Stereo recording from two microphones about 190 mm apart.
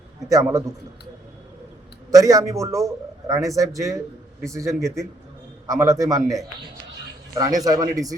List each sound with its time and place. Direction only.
2.0 s a man's voice: 20° right (ahead or behind)